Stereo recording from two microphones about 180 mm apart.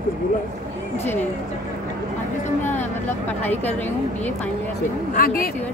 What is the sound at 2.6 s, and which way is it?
Speech, 10° left (ahead or behind).